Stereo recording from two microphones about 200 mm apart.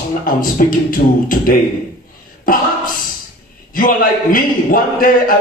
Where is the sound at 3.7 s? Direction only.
45° left (ahead or behind).